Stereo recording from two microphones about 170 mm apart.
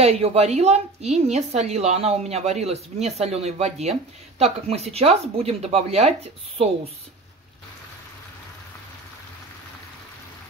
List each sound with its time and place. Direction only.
0.0 s a woman's voice: 35° right (ahead or behind)